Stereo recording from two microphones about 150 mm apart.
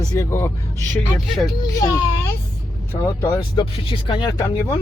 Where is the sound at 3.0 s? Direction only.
20° left (ahead or behind).